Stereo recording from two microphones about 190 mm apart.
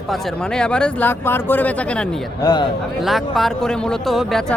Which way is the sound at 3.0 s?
Centre (ahead or behind).